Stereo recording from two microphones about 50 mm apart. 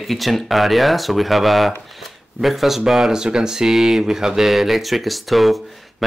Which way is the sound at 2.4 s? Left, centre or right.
Centre.